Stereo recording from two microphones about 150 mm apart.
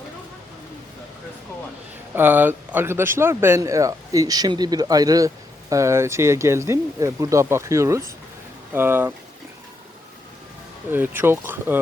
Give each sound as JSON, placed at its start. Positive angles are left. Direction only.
{"t": 2.1, "sound": "speech", "side_deg": -10}
{"t": 10.9, "sound": "speech", "side_deg": -15}